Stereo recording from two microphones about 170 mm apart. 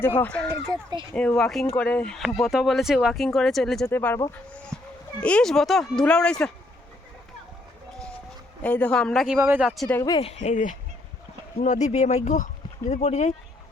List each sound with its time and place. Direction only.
0.0 s speech: 10° left (ahead or behind)
0.7 s speech: 20° right (ahead or behind)
1.4 s speech: centre (ahead or behind)
3.9 s speech: 15° left (ahead or behind)
5.2 s speech: 5° left (ahead or behind)
8.6 s speech: 10° left (ahead or behind)
9.9 s speech: 15° left (ahead or behind)
10.2 s speech: 40° left (ahead or behind)